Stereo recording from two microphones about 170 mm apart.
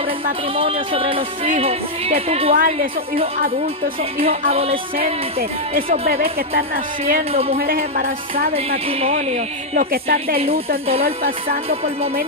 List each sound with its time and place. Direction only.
0.6 s speech: 35° right (ahead or behind)
2.5 s a woman's voice: 55° right (ahead or behind)
4.2 s speech: 35° right (ahead or behind)
5.8 s a woman's voice: 55° right (ahead or behind)
9.8 s a woman's voice: 60° right (ahead or behind)